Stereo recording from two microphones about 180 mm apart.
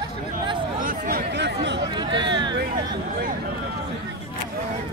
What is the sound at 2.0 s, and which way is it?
Hubbub, 25° right (ahead or behind).